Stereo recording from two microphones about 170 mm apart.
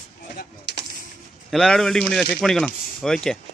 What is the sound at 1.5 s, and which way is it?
Speech, 5° left (ahead or behind).